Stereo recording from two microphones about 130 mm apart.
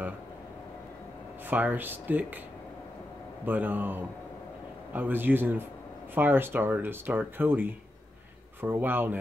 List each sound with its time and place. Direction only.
1.5 s speech: 15° right (ahead or behind)
3.4 s speech: 15° right (ahead or behind)